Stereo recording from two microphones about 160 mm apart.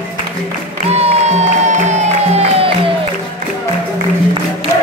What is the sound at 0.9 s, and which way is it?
Music, 40° right (ahead or behind).